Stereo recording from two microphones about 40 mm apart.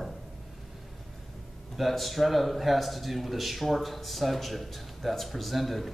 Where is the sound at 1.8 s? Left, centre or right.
Centre.